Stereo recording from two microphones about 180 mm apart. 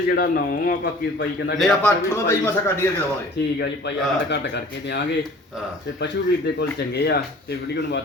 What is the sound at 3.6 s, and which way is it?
Speech, 75° left (ahead or behind).